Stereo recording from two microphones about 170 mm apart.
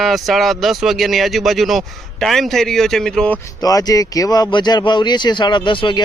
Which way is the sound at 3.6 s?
20° left (ahead or behind).